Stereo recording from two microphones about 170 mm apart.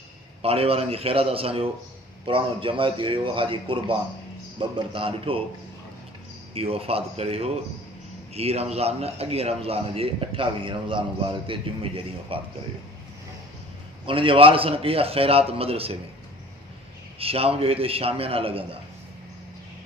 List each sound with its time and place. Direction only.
0.4 s a man's voice: 35° right (ahead or behind)
6.5 s a man's voice: 35° right (ahead or behind)
14.0 s a man's voice: 30° right (ahead or behind)
17.2 s a man's voice: 35° right (ahead or behind)